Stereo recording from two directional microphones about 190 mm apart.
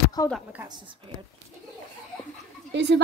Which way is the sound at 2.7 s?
65° right (ahead or behind).